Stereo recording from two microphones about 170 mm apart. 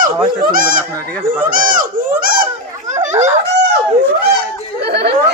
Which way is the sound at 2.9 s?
45° right (ahead or behind).